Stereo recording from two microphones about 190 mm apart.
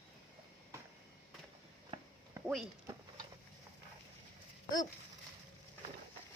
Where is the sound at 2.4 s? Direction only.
15° right (ahead or behind).